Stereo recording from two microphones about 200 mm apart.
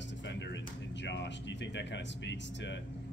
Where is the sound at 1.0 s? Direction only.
60° left (ahead or behind).